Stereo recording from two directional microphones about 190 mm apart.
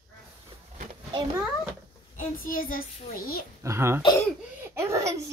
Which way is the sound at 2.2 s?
45° left (ahead or behind).